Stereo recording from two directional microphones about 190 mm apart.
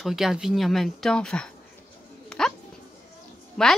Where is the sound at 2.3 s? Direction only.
5° left (ahead or behind).